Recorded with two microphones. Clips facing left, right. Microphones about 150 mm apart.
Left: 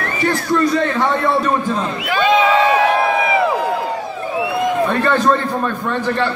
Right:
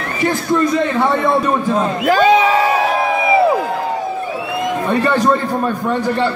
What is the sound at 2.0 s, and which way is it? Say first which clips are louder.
Speech: right 3 dB; 40° right (ahead or behind).